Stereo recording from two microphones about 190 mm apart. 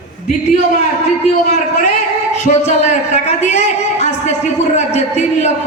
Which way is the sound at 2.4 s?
35° left (ahead or behind).